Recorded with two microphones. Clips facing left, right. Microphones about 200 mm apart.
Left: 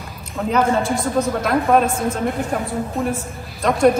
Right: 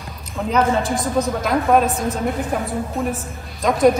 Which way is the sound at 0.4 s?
Centre (ahead or behind).